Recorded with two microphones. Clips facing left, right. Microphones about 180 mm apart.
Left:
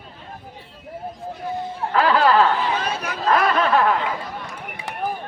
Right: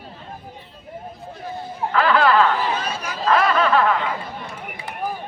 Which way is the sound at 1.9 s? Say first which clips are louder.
Even; 40° left (ahead or behind).